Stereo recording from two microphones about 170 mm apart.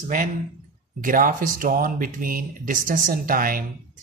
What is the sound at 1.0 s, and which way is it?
Speech, 55° right (ahead or behind).